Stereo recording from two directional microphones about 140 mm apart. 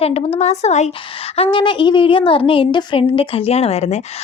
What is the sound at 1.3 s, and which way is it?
Speech, 40° left (ahead or behind).